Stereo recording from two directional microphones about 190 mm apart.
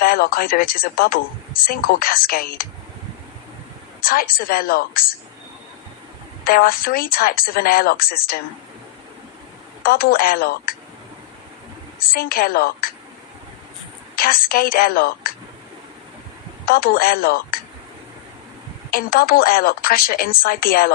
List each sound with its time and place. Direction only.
0.0 s a woman's voice: 50° left (ahead or behind)
4.0 s a woman's voice: 50° left (ahead or behind)
6.4 s a woman's voice: 50° left (ahead or behind)
9.8 s a woman's voice: 50° left (ahead or behind)
11.9 s a woman's voice: 50° left (ahead or behind)
14.2 s a woman's voice: 50° left (ahead or behind)
16.6 s a woman's voice: 50° left (ahead or behind)
18.9 s a woman's voice: 50° left (ahead or behind)